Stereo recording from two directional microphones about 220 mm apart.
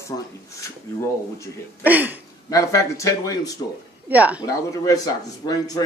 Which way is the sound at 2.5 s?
15° left (ahead or behind).